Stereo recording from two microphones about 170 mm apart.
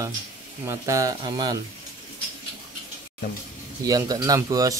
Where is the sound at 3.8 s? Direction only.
20° right (ahead or behind).